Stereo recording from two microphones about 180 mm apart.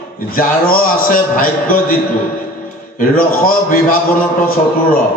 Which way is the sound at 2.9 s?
50° left (ahead or behind).